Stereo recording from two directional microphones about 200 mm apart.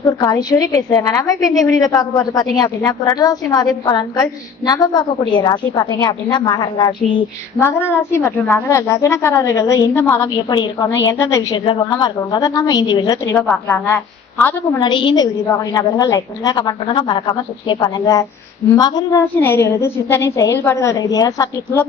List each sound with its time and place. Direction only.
0.2 s a woman's voice: 20° left (ahead or behind)